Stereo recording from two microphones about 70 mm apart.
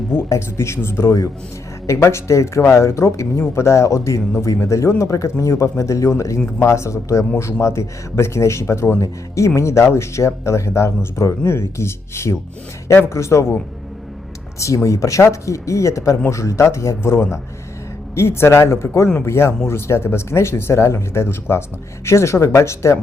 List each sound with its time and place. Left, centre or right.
0.3 s speech: left
14.8 s speech: left